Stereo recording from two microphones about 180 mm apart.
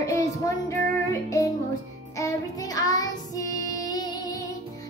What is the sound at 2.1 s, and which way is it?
Child singing, 20° left (ahead or behind).